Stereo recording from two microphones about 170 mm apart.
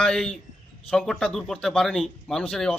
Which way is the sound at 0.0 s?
5° left (ahead or behind).